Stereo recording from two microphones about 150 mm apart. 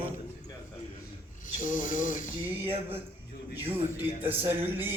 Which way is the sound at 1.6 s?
65° left (ahead or behind).